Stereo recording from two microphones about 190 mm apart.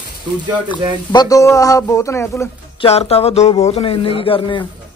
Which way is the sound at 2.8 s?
30° left (ahead or behind).